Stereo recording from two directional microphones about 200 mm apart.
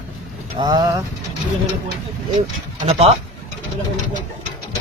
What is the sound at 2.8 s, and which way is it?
Speech, 30° right (ahead or behind).